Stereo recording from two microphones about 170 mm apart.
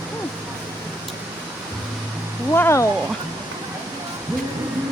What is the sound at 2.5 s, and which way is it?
Cat, 15° left (ahead or behind).